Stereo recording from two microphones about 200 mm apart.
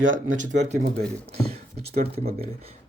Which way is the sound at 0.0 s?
75° right (ahead or behind).